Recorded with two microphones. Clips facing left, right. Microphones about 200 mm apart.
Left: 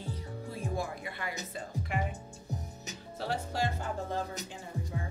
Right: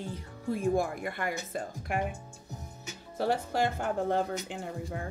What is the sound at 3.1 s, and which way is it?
Speech, 50° right (ahead or behind).